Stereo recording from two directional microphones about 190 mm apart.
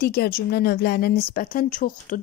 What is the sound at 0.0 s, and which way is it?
Speech, 55° left (ahead or behind).